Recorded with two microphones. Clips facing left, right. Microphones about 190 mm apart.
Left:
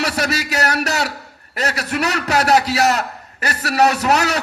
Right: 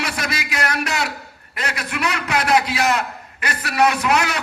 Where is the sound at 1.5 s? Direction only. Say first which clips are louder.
Left 5 dB; 40° left (ahead or behind).